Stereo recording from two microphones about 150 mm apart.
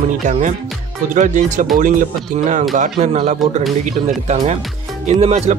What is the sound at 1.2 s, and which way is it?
Speech, 55° right (ahead or behind).